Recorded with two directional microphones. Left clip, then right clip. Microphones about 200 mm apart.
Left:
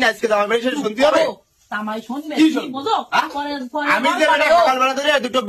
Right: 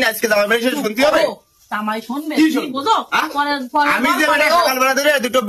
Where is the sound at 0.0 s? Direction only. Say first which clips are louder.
Right 1 dB; centre (ahead or behind).